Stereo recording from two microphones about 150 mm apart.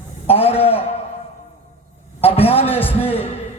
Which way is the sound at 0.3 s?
40° left (ahead or behind).